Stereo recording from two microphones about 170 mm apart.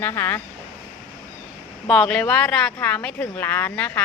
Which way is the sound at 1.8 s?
5° left (ahead or behind).